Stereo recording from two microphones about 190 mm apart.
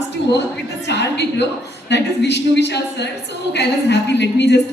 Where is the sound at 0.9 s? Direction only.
65° left (ahead or behind).